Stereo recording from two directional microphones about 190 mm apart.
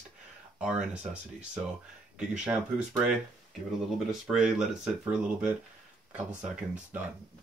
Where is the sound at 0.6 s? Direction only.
5° right (ahead or behind).